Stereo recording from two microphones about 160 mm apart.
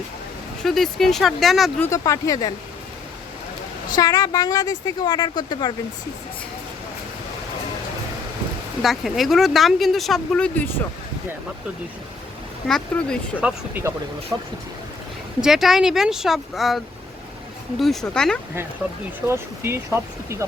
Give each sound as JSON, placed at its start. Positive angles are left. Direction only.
{"t": 0.6, "sound": "speech", "side_deg": 0}
{"t": 1.8, "sound": "speech", "side_deg": 20}
{"t": 3.9, "sound": "speech", "side_deg": 25}
{"t": 8.8, "sound": "speech", "side_deg": 0}
{"t": 12.6, "sound": "speech", "side_deg": 5}
{"t": 13.4, "sound": "speech", "side_deg": -10}
{"t": 15.4, "sound": "speech", "side_deg": -5}
{"t": 19.3, "sound": "speech", "side_deg": -15}